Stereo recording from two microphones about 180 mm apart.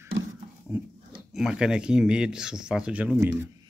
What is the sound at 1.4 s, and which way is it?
Speech, 5° right (ahead or behind).